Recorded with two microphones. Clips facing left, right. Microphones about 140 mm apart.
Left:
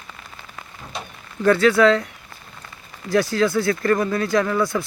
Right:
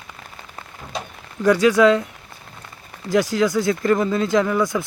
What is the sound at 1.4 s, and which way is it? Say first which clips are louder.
Speech: right 1 dB; 15° right (ahead or behind).